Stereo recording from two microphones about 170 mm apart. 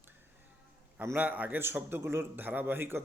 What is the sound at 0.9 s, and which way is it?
Speech, 10° right (ahead or behind).